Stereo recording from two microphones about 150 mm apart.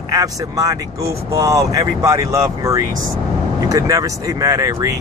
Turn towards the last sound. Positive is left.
turn(degrees=-20)  # may be behind; listen again after turning